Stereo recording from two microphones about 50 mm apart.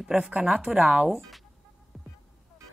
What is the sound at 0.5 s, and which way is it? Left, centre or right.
Speech, right.